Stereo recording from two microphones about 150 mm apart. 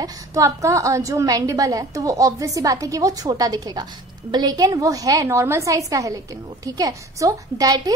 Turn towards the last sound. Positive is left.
turn(degrees=-20)  # may be behind; listen again after turning